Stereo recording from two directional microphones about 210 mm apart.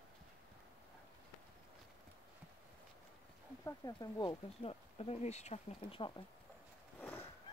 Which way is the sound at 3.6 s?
15° left (ahead or behind).